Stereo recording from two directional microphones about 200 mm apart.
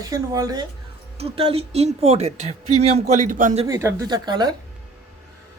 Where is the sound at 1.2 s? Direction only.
30° right (ahead or behind).